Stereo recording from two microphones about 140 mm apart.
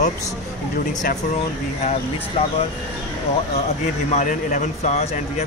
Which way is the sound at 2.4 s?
45° left (ahead or behind).